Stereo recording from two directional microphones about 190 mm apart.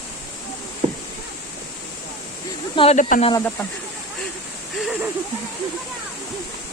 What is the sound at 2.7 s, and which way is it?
Speech, 30° left (ahead or behind).